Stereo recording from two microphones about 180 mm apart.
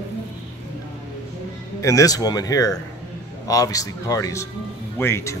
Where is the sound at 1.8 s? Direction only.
20° left (ahead or behind).